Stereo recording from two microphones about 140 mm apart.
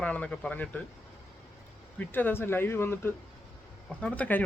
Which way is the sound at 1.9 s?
15° left (ahead or behind).